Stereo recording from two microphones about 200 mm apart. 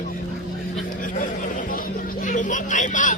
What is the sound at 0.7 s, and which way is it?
Chatter, 40° left (ahead or behind).